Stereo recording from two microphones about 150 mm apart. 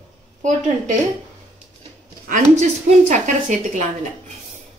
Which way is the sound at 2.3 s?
55° right (ahead or behind).